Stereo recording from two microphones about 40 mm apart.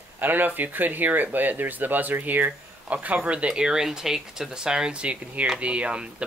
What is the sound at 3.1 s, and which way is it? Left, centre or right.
Speech, right.